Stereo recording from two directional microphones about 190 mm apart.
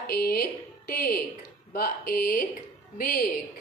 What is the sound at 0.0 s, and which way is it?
A woman's voice, 55° left (ahead or behind).